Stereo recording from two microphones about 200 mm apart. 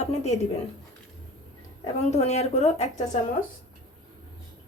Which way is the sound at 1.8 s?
35° left (ahead or behind).